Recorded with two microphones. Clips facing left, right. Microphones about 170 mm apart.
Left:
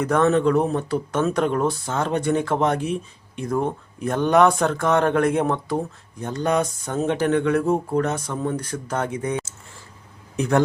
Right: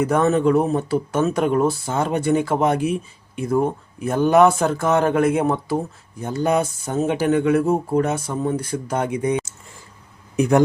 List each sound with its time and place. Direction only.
0.0 s speech: 10° right (ahead or behind)
10.3 s a man's voice: 15° right (ahead or behind)